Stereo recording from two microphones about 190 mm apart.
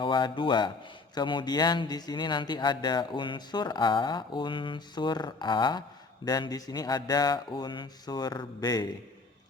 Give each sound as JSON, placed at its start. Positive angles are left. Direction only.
{"t": 0.0, "sound": "speech", "side_deg": 25}